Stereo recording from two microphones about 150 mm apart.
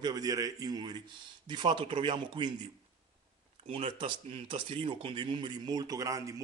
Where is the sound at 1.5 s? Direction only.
30° right (ahead or behind).